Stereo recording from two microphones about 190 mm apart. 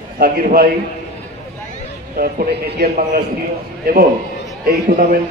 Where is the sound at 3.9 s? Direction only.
50° right (ahead or behind).